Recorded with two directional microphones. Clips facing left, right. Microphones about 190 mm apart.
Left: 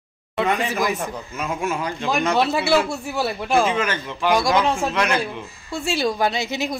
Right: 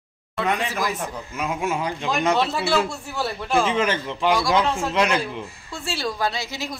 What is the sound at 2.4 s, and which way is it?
A woman's voice, 10° left (ahead or behind).